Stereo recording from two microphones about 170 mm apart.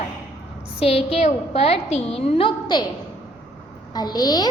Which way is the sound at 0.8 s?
35° left (ahead or behind).